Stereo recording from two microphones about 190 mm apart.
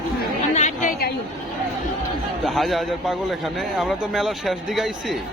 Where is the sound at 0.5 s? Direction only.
40° left (ahead or behind).